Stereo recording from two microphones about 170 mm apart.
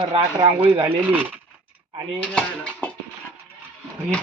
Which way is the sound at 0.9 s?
10° right (ahead or behind).